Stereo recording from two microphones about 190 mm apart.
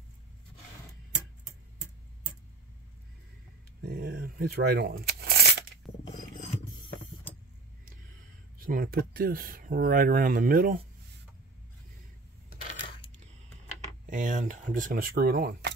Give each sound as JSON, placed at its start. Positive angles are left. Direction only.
{"t": 3.8, "sound": "speech", "side_deg": -60}
{"t": 8.5, "sound": "speech", "side_deg": -50}
{"t": 14.1, "sound": "speech", "side_deg": -40}